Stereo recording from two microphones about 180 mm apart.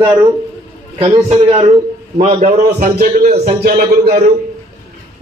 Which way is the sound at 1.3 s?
30° right (ahead or behind).